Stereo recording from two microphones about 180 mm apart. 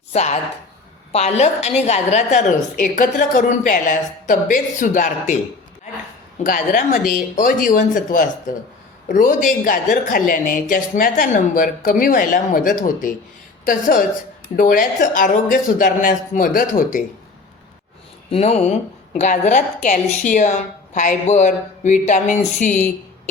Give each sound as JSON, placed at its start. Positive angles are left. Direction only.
{"t": 0.1, "sound": "a woman's voice", "side_deg": 40}
{"t": 6.4, "sound": "a woman's voice", "side_deg": 50}
{"t": 18.3, "sound": "a woman's voice", "side_deg": 35}